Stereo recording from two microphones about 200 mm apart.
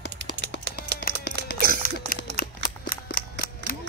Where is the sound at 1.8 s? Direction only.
45° left (ahead or behind).